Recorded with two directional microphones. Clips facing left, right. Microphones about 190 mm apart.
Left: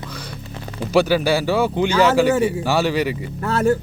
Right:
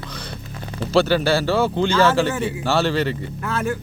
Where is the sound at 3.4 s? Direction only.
35° left (ahead or behind).